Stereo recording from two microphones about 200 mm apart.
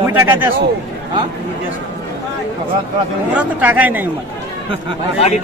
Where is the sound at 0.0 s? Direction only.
15° right (ahead or behind).